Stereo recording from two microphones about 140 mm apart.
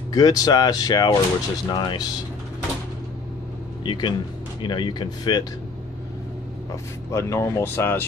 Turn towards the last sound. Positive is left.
turn(degrees=15)  # may be behind; listen again after turning